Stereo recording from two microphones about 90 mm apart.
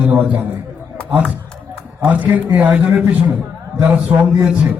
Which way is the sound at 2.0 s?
20° right (ahead or behind).